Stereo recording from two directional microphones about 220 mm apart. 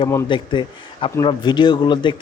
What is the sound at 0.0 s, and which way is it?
Speech, 20° left (ahead or behind).